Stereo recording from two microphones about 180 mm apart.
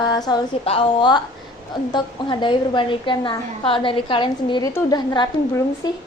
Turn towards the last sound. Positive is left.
turn(degrees=20)  # may be behind; listen again after turning